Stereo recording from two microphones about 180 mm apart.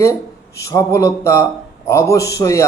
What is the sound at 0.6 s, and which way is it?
Speech, 15° left (ahead or behind).